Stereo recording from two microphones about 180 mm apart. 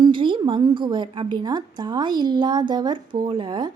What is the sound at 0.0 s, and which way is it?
A woman's voice, 25° right (ahead or behind).